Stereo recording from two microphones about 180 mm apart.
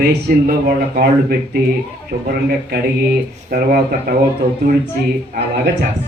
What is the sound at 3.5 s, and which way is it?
Speech, 55° right (ahead or behind).